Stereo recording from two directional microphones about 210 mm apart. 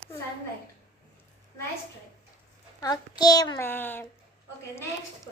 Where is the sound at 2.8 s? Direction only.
20° left (ahead or behind).